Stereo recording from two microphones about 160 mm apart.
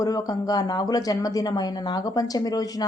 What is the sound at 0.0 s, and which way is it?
A woman's voice, 20° left (ahead or behind).